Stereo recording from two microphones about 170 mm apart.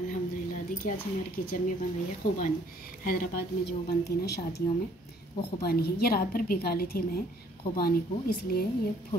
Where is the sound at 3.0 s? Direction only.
60° left (ahead or behind).